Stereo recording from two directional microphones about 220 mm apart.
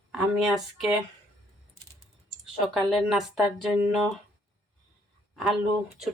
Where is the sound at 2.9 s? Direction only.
Centre (ahead or behind).